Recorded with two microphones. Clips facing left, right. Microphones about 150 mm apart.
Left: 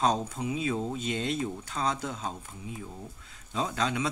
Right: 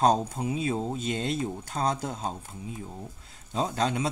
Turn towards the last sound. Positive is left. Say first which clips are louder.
# right 2 dB
turn(degrees=-40)  # may be behind; listen again after turning